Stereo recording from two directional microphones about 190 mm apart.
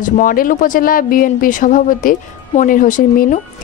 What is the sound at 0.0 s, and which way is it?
Speech, 45° left (ahead or behind).